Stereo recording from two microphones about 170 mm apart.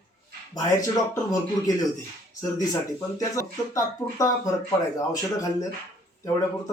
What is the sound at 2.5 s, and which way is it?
Speech, 20° left (ahead or behind).